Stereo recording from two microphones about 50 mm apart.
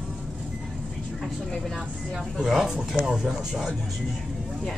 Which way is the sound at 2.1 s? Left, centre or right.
Centre.